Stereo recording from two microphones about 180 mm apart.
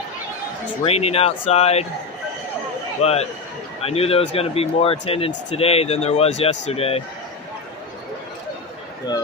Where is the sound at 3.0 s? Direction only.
35° left (ahead or behind).